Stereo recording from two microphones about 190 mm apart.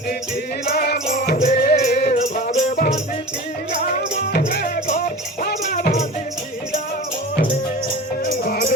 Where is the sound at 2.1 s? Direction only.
40° left (ahead or behind).